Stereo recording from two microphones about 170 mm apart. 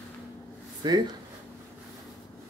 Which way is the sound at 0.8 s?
25° right (ahead or behind).